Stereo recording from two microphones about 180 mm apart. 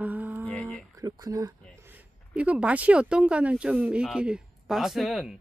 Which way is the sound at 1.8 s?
10° right (ahead or behind).